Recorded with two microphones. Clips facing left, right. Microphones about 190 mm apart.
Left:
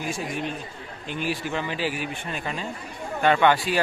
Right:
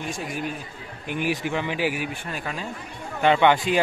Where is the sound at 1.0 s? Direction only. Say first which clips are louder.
Right 3 dB; 15° right (ahead or behind).